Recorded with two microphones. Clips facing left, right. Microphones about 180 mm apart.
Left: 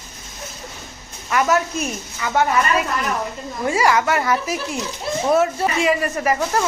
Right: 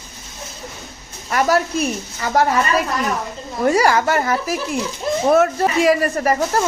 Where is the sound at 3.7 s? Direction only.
35° right (ahead or behind).